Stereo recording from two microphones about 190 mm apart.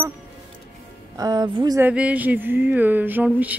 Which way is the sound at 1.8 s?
5° right (ahead or behind).